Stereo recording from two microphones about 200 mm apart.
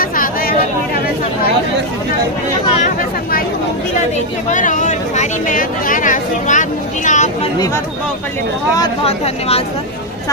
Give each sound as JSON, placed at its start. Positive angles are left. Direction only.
{"t": 0.0, "sound": "chatter", "side_deg": 45}
{"t": 4.4, "sound": "chatter", "side_deg": 40}
{"t": 9.0, "sound": "speech", "side_deg": 30}